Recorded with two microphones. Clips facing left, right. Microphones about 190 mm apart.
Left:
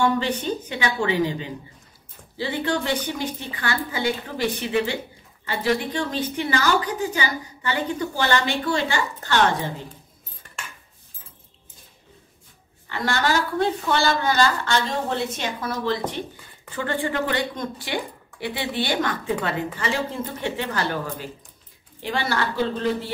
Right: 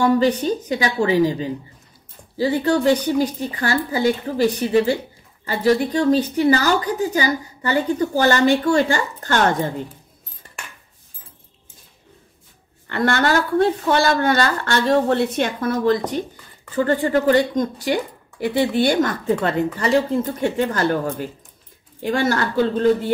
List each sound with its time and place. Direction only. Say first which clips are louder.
0.0 s speech: right 6 dB; 35° right (ahead or behind)
12.8 s a woman's voice: right 5 dB; 55° right (ahead or behind)
16.7 s speech: right 7 dB; 40° right (ahead or behind)